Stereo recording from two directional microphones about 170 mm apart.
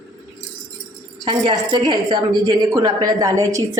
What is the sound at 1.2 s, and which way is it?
A woman's voice, 25° right (ahead or behind).